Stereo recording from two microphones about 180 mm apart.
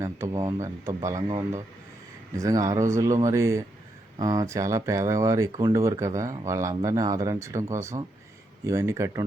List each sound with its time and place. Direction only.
0.0 s speech: 15° right (ahead or behind)
2.3 s speech: 20° right (ahead or behind)